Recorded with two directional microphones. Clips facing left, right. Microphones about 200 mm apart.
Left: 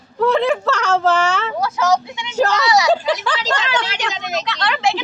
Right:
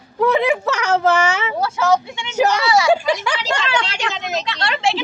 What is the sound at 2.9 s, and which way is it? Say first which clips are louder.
Speech: even; 10° right (ahead or behind).